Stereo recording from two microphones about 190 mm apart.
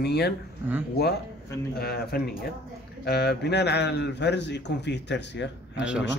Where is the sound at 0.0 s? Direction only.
60° left (ahead or behind).